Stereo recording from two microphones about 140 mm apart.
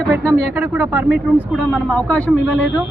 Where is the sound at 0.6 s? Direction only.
15° right (ahead or behind).